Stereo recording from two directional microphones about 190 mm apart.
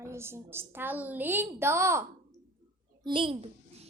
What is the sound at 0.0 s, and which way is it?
A woman's voice, 15° right (ahead or behind).